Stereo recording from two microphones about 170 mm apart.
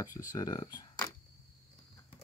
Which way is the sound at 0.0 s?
20° left (ahead or behind).